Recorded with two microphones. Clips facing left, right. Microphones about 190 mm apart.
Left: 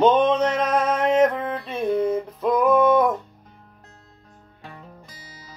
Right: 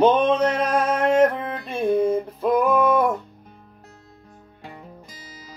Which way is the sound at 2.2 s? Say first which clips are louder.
Even; 5° right (ahead or behind).